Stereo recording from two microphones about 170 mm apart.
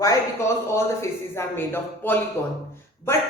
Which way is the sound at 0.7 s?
15° left (ahead or behind).